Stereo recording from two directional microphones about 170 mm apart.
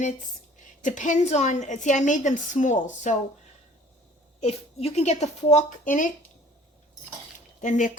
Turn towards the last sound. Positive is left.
turn(degrees=50)  # may be behind; listen again after turning